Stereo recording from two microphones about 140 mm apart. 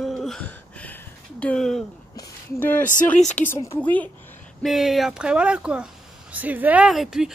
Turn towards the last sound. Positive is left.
turn(degrees=0)  # may be behind; listen again after turning